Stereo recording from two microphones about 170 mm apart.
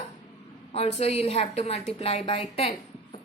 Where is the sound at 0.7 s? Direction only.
40° left (ahead or behind).